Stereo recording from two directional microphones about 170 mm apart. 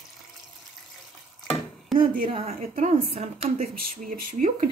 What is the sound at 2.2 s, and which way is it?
Speech, 30° right (ahead or behind).